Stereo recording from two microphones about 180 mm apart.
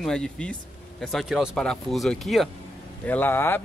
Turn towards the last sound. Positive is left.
turn(degrees=10)  # may be behind; listen again after turning